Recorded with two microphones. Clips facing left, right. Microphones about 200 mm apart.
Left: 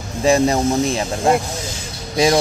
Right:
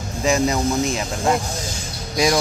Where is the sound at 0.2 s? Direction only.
35° left (ahead or behind).